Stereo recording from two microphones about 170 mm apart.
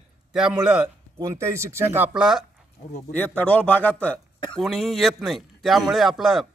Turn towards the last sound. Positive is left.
turn(degrees=0)  # may be behind; listen again after turning